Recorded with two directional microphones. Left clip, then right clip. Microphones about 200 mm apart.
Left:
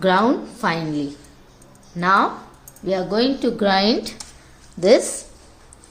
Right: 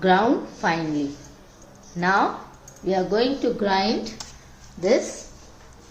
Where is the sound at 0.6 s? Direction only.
50° left (ahead or behind).